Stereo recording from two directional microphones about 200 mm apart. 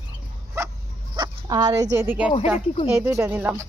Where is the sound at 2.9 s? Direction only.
10° right (ahead or behind).